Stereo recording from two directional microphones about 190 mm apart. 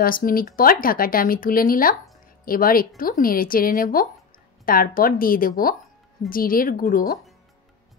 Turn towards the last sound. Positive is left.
turn(degrees=50)  # may be behind; listen again after turning